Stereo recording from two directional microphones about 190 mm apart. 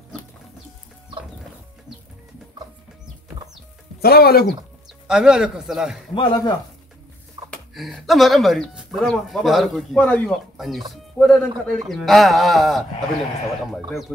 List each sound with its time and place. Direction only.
4.0 s speech: 55° left (ahead or behind)
4.8 s speech: 5° right (ahead or behind)
6.1 s speech: 25° left (ahead or behind)
7.5 s speech: centre (ahead or behind)